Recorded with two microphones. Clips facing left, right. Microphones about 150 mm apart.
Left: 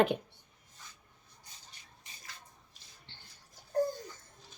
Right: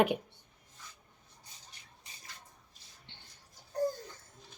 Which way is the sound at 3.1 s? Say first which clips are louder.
Right 1 dB; 20° right (ahead or behind).